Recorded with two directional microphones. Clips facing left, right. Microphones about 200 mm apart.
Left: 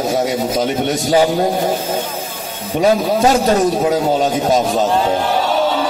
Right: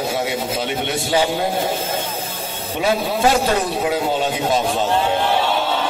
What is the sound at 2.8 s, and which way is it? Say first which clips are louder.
A man's voice: left 5 dB; 40° left (ahead or behind).